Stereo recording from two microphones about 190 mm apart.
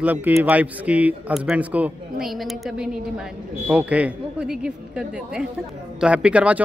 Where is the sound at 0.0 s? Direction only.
10° right (ahead or behind).